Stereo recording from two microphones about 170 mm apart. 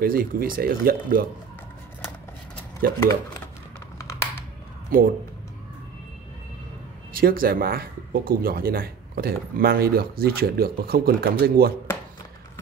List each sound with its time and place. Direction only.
0.0 s speech: 60° right (ahead or behind)
2.8 s speech: 60° right (ahead or behind)
4.0 s computer keyboard: 15° left (ahead or behind)
4.9 s speech: 55° right (ahead or behind)
7.2 s speech: 60° right (ahead or behind)